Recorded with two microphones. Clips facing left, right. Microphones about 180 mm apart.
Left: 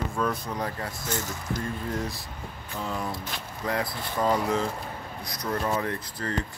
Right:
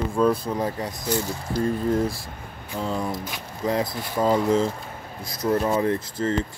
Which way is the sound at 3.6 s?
20° right (ahead or behind).